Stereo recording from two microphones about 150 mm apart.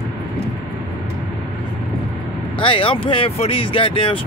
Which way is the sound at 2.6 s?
35° left (ahead or behind).